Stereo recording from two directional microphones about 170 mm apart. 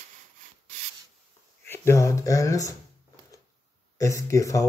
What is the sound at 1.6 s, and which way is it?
Speech, 15° left (ahead or behind).